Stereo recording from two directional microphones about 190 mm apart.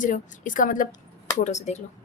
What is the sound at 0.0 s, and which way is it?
A woman's voice, 45° left (ahead or behind).